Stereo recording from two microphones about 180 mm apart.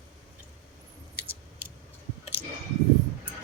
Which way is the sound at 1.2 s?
10° right (ahead or behind).